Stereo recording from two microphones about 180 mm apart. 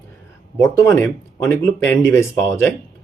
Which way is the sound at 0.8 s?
15° left (ahead or behind).